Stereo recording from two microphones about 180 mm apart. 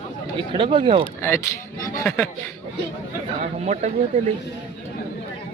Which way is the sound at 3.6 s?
40° right (ahead or behind).